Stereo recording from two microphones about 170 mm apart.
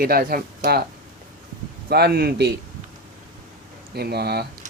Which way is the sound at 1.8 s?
70° right (ahead or behind).